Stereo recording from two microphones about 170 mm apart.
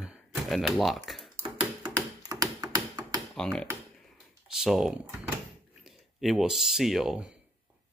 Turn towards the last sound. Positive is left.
turn(degrees=-5)  # may be behind; listen again after turning